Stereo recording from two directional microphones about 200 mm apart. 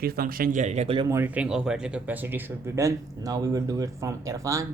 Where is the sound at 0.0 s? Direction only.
50° right (ahead or behind); by 1.0 s 30° right (ahead or behind).